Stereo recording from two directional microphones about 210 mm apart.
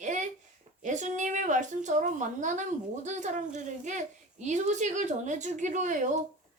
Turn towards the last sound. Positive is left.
turn(degrees=-35)  # may be behind; listen again after turning